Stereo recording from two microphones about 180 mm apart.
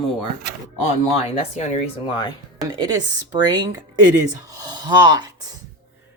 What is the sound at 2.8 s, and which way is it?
Speech, 20° right (ahead or behind).